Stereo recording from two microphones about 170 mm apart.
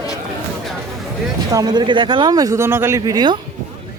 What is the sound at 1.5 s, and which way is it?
Speech, 20° right (ahead or behind).